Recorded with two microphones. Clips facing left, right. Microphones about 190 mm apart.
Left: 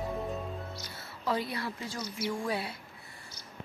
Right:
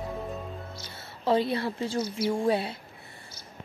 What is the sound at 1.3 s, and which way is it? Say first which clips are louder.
Speech: right 7 dB; 30° right (ahead or behind).